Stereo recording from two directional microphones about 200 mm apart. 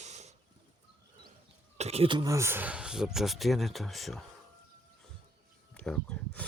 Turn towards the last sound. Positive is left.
turn(degrees=5)  # may be behind; listen again after turning